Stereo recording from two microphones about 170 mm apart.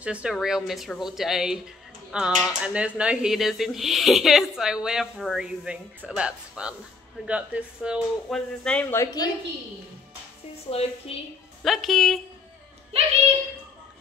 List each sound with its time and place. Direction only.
0.0 s speech: 5° right (ahead or behind)
8.6 s a woman's voice: 5° left (ahead or behind)
9.0 s a woman's voice: 25° left (ahead or behind)
10.7 s a woman's voice: 35° left (ahead or behind)
11.6 s speech: centre (ahead or behind)